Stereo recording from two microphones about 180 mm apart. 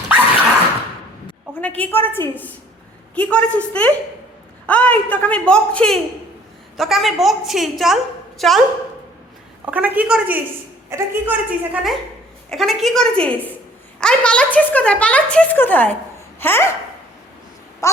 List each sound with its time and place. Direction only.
1.6 s a woman's voice: 10° left (ahead or behind)
9.6 s a woman's voice: 10° right (ahead or behind); by 16.6 s 10° left (ahead or behind)
17.8 s a woman's voice: 15° left (ahead or behind)